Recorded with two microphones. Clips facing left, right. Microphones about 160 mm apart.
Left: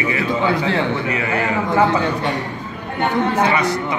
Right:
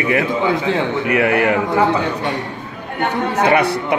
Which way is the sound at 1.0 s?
65° right (ahead or behind).